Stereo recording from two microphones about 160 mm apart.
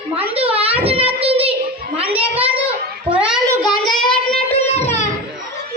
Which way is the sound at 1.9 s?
35° right (ahead or behind).